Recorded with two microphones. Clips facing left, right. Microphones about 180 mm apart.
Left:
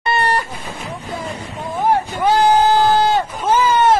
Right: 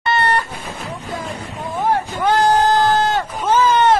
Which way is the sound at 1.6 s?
15° left (ahead or behind).